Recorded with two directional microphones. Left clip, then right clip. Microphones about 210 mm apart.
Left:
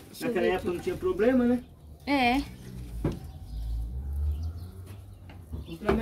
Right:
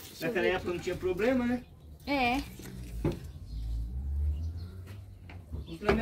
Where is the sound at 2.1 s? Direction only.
20° left (ahead or behind).